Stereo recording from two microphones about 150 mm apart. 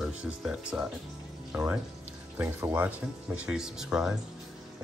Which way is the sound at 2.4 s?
10° right (ahead or behind).